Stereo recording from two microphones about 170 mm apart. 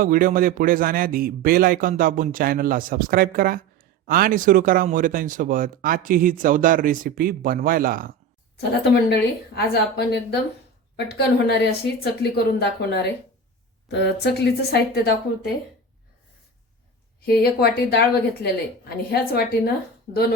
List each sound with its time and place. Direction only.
0.0 s a man's voice: 55° right (ahead or behind)
8.7 s a woman's voice: 80° left
13.8 s a woman's voice: 80° left
17.2 s a woman's voice: 65° left (ahead or behind)